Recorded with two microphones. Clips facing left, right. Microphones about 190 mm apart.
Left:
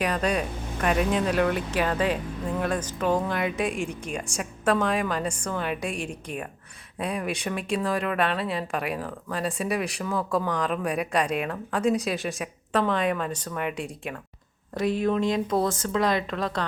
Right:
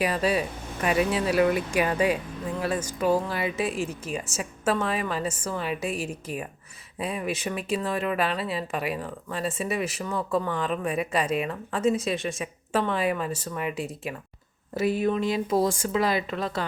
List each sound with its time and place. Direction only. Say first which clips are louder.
0.0 s speech: right 1 dB; 5° right (ahead or behind)